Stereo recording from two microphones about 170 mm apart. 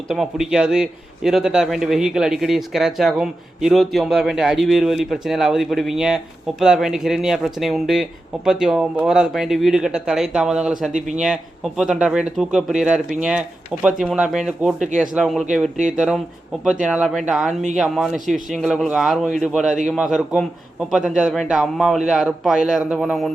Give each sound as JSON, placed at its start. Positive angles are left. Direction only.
{"t": 0.1, "sound": "a man's voice", "side_deg": 0}
{"t": 10.9, "sound": "speech", "side_deg": -45}
{"t": 11.2, "sound": "a man's voice", "side_deg": -5}